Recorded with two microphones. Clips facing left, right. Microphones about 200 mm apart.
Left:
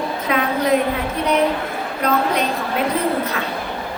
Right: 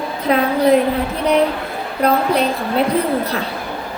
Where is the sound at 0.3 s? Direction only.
35° right (ahead or behind).